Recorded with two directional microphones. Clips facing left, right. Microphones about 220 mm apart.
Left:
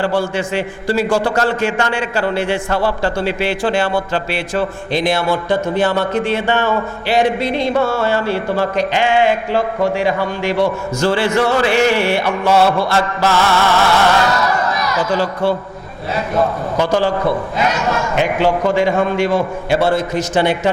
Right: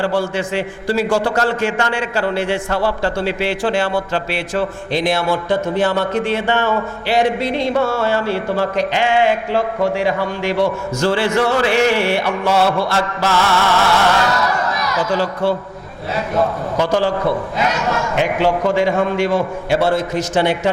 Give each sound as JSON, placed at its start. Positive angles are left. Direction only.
{"t": 0.0, "sound": "speech", "side_deg": 20}
{"t": 5.3, "sound": "speech", "side_deg": 25}
{"t": 12.5, "sound": "mantra", "side_deg": 35}
{"t": 12.9, "sound": "a man's voice", "side_deg": 15}